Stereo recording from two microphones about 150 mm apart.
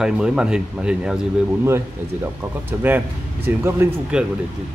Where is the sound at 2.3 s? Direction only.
15° right (ahead or behind).